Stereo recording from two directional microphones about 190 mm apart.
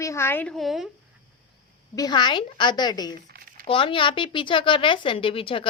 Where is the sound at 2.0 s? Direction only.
20° left (ahead or behind).